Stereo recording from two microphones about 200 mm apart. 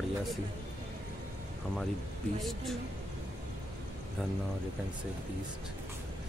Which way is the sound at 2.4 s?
Centre (ahead or behind).